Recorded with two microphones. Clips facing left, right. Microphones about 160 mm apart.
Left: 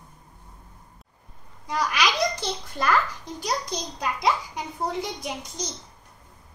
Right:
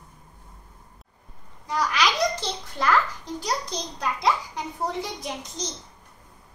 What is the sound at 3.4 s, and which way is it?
A child's voice, 10° left (ahead or behind).